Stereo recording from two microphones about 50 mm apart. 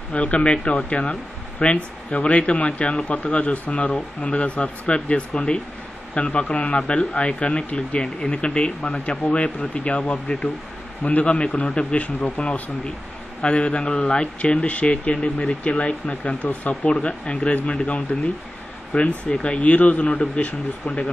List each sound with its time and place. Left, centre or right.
0.1 s speech: left